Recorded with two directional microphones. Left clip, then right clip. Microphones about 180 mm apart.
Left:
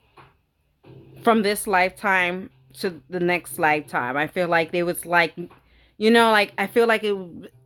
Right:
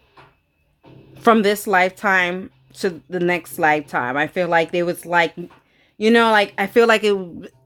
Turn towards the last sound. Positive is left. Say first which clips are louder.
# right 6 dB
turn(degrees=-10)  # may be behind; listen again after turning